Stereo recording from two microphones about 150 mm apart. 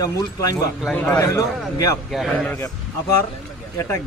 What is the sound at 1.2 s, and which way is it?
Speech, 20° left (ahead or behind).